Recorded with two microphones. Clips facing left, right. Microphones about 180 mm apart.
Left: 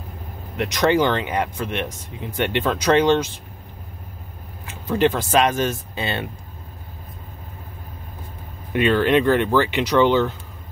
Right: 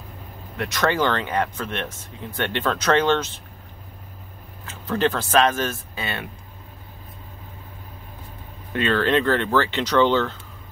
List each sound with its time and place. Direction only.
0.6 s speech: 15° left (ahead or behind)
4.6 s speech: 15° left (ahead or behind)
8.7 s speech: 15° left (ahead or behind)